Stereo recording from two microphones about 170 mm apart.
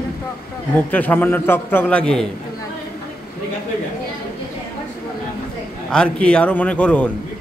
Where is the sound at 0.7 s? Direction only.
10° left (ahead or behind).